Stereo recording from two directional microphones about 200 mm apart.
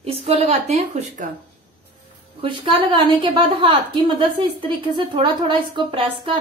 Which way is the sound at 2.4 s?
25° right (ahead or behind).